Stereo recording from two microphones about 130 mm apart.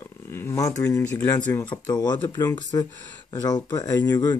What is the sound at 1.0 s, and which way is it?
Speech, 15° left (ahead or behind).